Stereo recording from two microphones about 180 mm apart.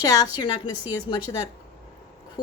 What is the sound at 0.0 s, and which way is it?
Speech, 20° left (ahead or behind).